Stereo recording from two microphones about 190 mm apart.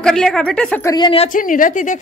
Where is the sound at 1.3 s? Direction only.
45° left (ahead or behind).